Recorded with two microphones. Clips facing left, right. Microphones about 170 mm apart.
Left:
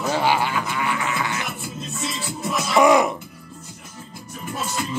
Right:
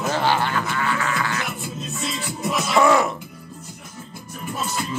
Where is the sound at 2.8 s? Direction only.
15° left (ahead or behind).